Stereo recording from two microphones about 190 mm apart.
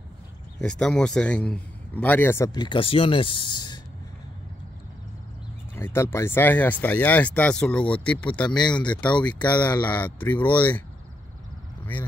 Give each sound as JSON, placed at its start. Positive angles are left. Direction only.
{"t": 0.6, "sound": "speech", "side_deg": 5}
{"t": 5.8, "sound": "speech", "side_deg": 10}
{"t": 9.5, "sound": "speech", "side_deg": 20}
{"t": 9.8, "sound": "speech", "side_deg": 10}
{"t": 11.8, "sound": "vehicle", "side_deg": 10}